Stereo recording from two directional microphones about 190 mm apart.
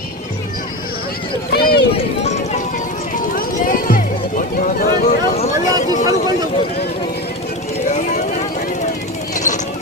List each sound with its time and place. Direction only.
1.5 s run: 55° left (ahead or behind)
3.3 s music: 50° left (ahead or behind)
5.6 s chatter: 20° right (ahead or behind)
7.9 s vehicle: 40° left (ahead or behind)